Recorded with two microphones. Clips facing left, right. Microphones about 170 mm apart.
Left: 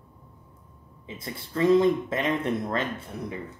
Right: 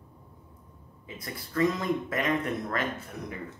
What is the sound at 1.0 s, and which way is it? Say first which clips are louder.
Speech: left 3 dB; 25° left (ahead or behind).